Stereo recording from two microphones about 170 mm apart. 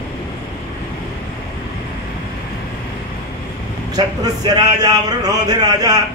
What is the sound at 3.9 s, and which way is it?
Speech, 25° right (ahead or behind).